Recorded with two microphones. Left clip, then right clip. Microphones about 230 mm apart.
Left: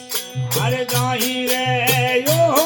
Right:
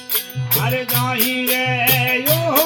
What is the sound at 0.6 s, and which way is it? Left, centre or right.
Music, left.